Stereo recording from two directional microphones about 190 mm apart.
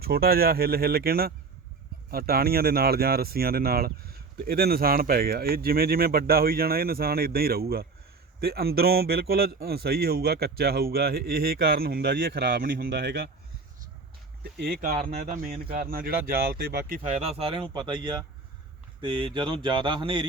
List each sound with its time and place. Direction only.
0.0 s speech: 55° right (ahead or behind)
14.4 s speech: 55° right (ahead or behind)
17.0 s speech: 35° right (ahead or behind)